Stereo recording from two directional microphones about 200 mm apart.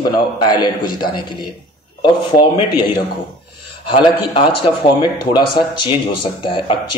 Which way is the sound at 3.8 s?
25° left (ahead or behind).